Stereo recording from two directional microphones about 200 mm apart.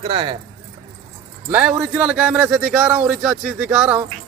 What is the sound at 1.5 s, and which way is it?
A man's voice, 5° right (ahead or behind).